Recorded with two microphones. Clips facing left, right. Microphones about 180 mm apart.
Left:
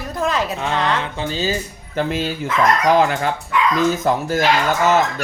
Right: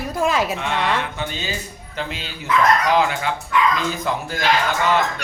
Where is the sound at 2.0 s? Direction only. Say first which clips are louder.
Left 9 dB; 50° left (ahead or behind).